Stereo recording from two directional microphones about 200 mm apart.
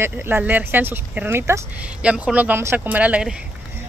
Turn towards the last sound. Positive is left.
turn(degrees=-5)  # may be behind; listen again after turning